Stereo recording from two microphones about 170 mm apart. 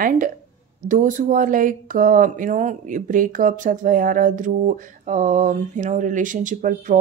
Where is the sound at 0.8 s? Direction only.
50° right (ahead or behind).